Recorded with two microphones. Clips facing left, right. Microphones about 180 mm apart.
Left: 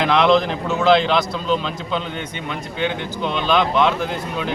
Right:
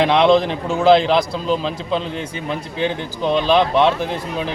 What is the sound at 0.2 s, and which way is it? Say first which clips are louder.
A man's voice: right 2 dB; 30° right (ahead or behind).